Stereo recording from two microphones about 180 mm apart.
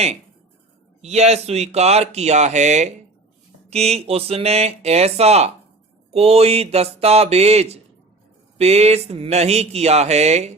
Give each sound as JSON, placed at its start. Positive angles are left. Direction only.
{"t": 1.0, "sound": "speech", "side_deg": -35}